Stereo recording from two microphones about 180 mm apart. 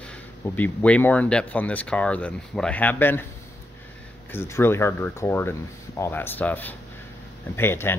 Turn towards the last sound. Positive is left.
turn(degrees=15)  # may be behind; listen again after turning